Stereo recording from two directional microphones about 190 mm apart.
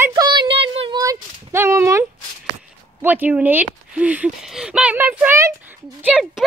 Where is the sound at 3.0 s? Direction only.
10° right (ahead or behind).